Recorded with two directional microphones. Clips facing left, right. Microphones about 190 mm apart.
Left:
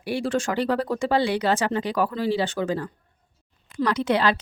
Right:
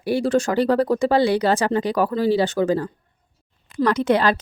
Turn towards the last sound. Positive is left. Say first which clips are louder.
# right 4 dB
turn(degrees=-45)  # may be behind; listen again after turning